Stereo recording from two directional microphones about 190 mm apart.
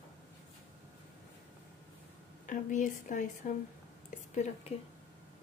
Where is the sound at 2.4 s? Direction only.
45° left (ahead or behind).